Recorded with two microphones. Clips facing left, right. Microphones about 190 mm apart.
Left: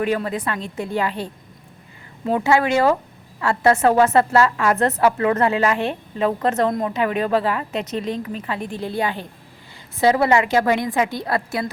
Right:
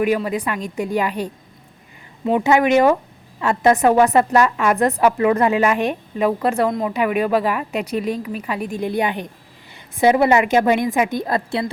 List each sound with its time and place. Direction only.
0.0 s a woman's voice: 10° right (ahead or behind)
2.3 s a woman's voice: 20° right (ahead or behind)
6.7 s speech: centre (ahead or behind)
6.9 s a woman's voice: 10° right (ahead or behind)